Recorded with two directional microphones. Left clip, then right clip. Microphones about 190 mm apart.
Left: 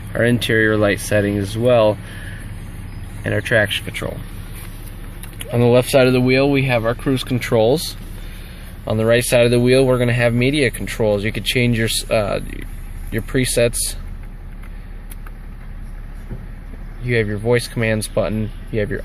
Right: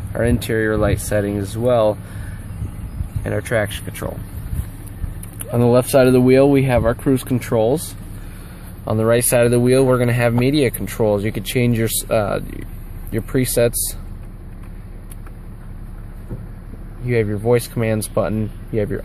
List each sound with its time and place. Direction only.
0.1 s speech: 10° left (ahead or behind)
3.3 s speech: 5° left (ahead or behind)
5.5 s speech: 5° right (ahead or behind)
6.1 s speech: 20° right (ahead or behind)
7.4 s speech: 5° left (ahead or behind)
8.8 s speech: 5° right (ahead or behind)
17.0 s speech: 5° right (ahead or behind)